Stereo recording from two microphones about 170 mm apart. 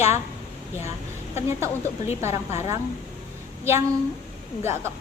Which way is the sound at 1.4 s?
15° right (ahead or behind).